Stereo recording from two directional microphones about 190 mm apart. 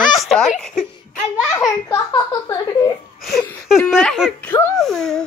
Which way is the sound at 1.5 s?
20° left (ahead or behind).